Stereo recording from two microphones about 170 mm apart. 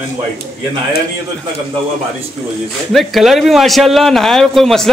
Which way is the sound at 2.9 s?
Centre (ahead or behind).